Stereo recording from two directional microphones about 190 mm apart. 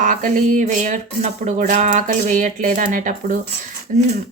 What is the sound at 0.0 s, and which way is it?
Speech, 45° right (ahead or behind).